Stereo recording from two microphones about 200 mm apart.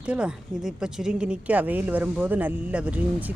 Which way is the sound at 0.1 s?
5° right (ahead or behind).